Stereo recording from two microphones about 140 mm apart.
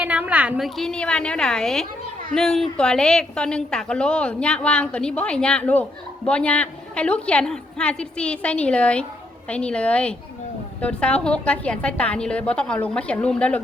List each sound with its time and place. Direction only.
0.0 s a woman's voice: 10° right (ahead or behind); by 13.6 s 10° left (ahead or behind)